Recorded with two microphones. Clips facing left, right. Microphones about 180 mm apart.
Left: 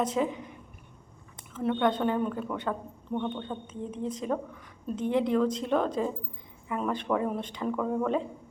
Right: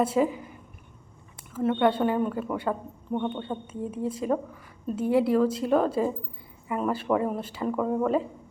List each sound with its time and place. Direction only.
0.0 s a woman's voice: 5° right (ahead or behind)